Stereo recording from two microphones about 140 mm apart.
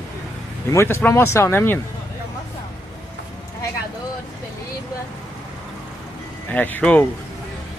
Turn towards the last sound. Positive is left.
turn(degrees=10)  # may be behind; listen again after turning